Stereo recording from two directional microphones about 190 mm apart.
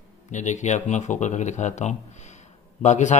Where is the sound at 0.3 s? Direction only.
40° left (ahead or behind).